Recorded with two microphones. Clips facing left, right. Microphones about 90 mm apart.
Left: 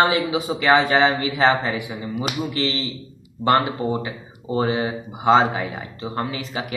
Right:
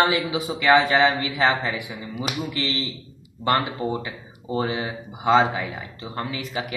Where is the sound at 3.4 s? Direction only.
15° left (ahead or behind).